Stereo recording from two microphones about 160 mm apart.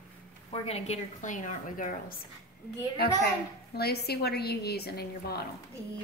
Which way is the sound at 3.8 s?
80° left.